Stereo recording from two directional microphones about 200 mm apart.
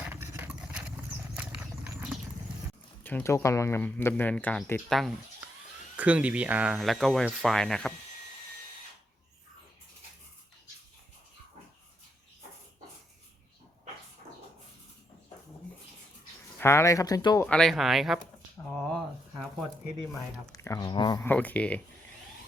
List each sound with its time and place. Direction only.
0.1 s engine: 10° right (ahead or behind)
1.4 s a sound: 10° right (ahead or behind)
3.0 s speech: 10° left (ahead or behind)
16.6 s speech: 15° left (ahead or behind)
17.5 s speech: centre (ahead or behind)
18.8 s a sound: 5° left (ahead or behind)
20.5 s speech: 20° left (ahead or behind)
21.2 s speech: 5° left (ahead or behind)